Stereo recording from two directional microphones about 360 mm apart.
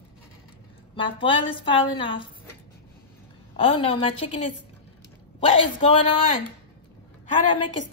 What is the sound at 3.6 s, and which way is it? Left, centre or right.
A woman's voice, centre.